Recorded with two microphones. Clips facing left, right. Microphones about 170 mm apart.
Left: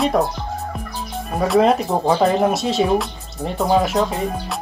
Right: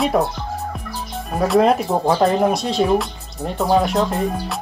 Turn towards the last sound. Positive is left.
turn(degrees=0)  # may be behind; listen again after turning